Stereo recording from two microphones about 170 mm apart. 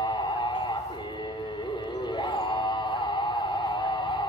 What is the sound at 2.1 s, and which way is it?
Music, 25° left (ahead or behind).